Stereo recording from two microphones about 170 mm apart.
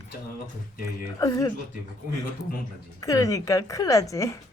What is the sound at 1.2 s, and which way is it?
Speech, 20° left (ahead or behind).